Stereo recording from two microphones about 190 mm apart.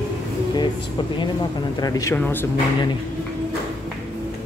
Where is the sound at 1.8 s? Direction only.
20° left (ahead or behind).